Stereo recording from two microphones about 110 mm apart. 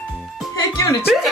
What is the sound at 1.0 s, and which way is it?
Speech, centre (ahead or behind).